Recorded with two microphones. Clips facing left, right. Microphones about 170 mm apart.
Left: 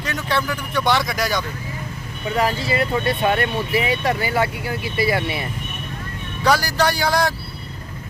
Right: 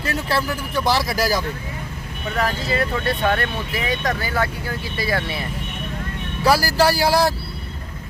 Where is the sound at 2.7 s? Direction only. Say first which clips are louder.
Left 1 dB; 20° left (ahead or behind).